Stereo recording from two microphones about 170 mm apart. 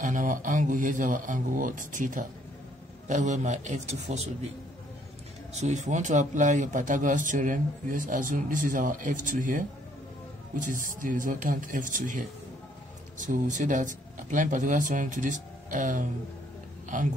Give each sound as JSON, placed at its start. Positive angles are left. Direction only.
{"t": 0.0, "sound": "a man's voice", "side_deg": -50}
{"t": 5.5, "sound": "a man's voice", "side_deg": -40}